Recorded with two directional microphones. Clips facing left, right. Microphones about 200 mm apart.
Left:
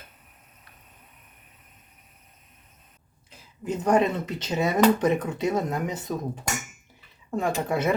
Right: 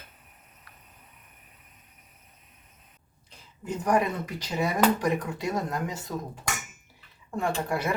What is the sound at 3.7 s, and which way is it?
Speech, 25° left (ahead or behind).